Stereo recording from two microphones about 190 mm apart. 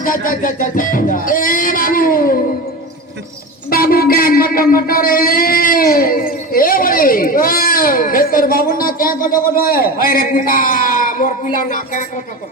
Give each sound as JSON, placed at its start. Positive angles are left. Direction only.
{"t": 0.0, "sound": "speech", "side_deg": 45}
{"t": 3.7, "sound": "speech", "side_deg": 50}